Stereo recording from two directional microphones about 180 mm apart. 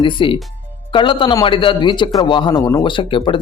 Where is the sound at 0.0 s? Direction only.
25° left (ahead or behind).